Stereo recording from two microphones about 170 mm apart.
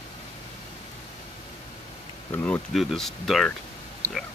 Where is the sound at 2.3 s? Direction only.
10° left (ahead or behind).